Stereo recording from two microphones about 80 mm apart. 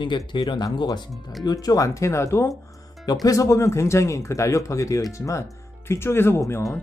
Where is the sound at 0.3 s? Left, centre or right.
Left.